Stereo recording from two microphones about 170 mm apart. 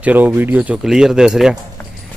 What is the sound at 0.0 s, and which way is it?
Speech, 10° right (ahead or behind).